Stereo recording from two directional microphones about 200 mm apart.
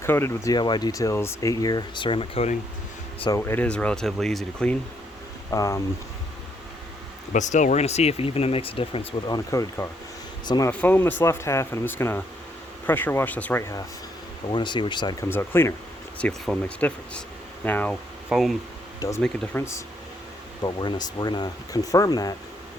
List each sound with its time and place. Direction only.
0.0 s speech: 10° left (ahead or behind); by 2.6 s 30° left (ahead or behind)
3.2 s speech: 15° left (ahead or behind)
5.5 s speech: 15° left (ahead or behind)
7.3 s speech: 40° left (ahead or behind); by 10.7 s 20° left (ahead or behind)
10.7 s speech: 10° left (ahead or behind)
18.9 s speech: 15° left (ahead or behind)
20.8 s speech: 20° left (ahead or behind)